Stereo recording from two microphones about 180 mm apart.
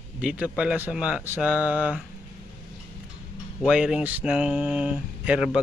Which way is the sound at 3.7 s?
5° right (ahead or behind).